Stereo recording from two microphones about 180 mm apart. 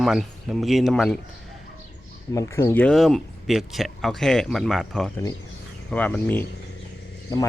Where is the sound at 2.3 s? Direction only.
15° left (ahead or behind).